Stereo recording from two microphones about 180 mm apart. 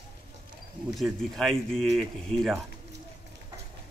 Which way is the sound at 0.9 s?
Centre (ahead or behind).